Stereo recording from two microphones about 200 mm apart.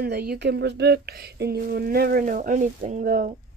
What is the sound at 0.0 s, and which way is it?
Speech, 55° right (ahead or behind).